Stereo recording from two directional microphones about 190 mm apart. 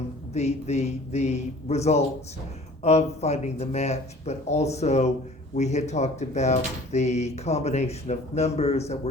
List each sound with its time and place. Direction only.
0.3 s speech: 35° left (ahead or behind)